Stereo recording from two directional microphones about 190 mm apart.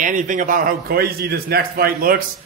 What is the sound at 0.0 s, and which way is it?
A man's voice, 45° right (ahead or behind).